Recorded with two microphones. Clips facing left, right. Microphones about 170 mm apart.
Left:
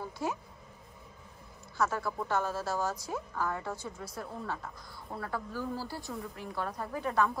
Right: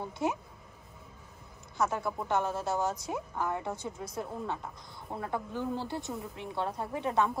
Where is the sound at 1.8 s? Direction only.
20° right (ahead or behind).